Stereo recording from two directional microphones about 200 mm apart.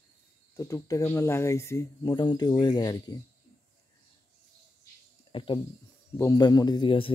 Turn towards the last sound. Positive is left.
turn(degrees=25)  # may be behind; listen again after turning